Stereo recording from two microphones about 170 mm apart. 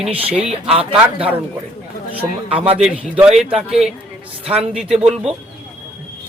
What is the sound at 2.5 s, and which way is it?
Speech, 35° right (ahead or behind).